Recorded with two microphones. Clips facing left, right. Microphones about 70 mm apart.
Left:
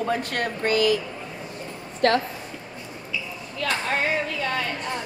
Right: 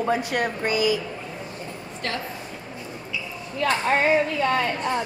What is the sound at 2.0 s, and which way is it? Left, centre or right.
Speech, left.